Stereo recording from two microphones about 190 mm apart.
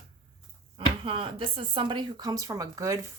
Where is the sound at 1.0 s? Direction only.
30° right (ahead or behind).